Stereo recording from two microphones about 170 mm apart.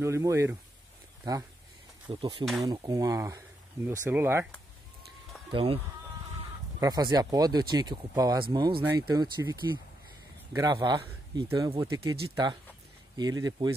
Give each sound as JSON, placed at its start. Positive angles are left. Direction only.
{"t": 0.0, "sound": "speech", "side_deg": -15}
{"t": 2.0, "sound": "speech", "side_deg": -25}
{"t": 5.5, "sound": "speech", "side_deg": -30}
{"t": 6.8, "sound": "speech", "side_deg": -20}
{"t": 13.2, "sound": "speech", "side_deg": -20}